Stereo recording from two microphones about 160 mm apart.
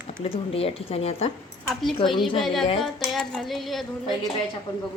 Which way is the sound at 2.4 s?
Centre (ahead or behind).